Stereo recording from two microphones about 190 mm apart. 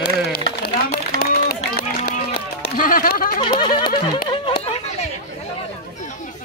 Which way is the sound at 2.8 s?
45° left (ahead or behind).